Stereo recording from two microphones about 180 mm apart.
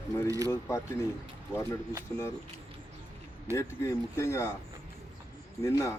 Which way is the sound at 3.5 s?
15° left (ahead or behind).